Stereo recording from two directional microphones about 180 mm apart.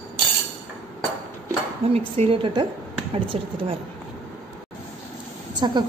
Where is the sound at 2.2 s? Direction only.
30° right (ahead or behind).